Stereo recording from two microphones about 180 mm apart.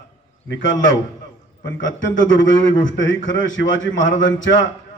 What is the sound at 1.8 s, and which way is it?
A man's voice, 90° left.